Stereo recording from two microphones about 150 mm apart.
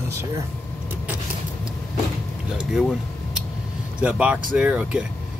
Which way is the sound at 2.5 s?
5° right (ahead or behind).